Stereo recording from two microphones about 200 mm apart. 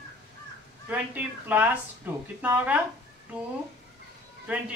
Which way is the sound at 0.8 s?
10° right (ahead or behind).